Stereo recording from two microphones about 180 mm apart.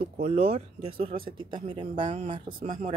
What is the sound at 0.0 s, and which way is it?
Speech, 35° right (ahead or behind).